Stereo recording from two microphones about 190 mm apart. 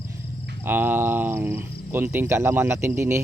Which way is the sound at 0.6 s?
10° right (ahead or behind).